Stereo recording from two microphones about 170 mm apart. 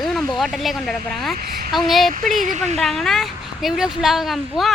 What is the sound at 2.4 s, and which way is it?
Speech, 45° right (ahead or behind).